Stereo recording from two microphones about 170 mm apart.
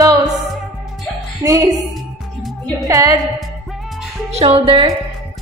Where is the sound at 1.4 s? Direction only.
20° right (ahead or behind).